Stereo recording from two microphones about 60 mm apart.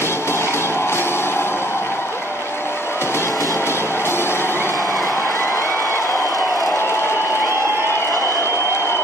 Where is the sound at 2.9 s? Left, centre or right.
Left.